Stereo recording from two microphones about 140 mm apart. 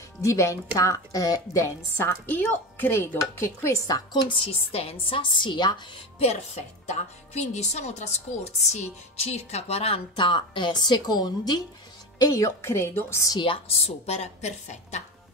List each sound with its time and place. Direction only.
0.2 s a woman's voice: 20° left (ahead or behind)
13.4 s speech: 40° left (ahead or behind)